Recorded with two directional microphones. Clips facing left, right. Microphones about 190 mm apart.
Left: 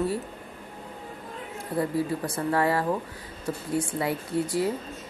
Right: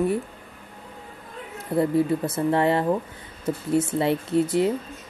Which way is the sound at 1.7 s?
25° right (ahead or behind).